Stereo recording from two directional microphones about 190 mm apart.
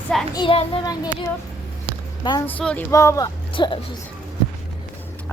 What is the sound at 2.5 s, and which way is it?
Speech, 10° left (ahead or behind).